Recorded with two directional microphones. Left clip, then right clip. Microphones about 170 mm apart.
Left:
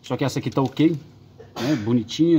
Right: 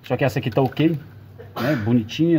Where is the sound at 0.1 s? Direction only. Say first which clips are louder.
Right 3 dB; 25° left (ahead or behind).